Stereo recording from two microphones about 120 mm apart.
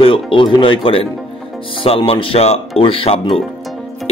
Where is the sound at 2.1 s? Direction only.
50° left (ahead or behind).